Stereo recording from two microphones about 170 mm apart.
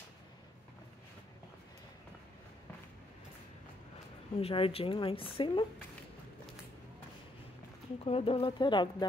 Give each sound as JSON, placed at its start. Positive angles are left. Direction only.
{"t": 4.4, "sound": "a woman's voice", "side_deg": 35}
{"t": 8.0, "sound": "a woman's voice", "side_deg": 35}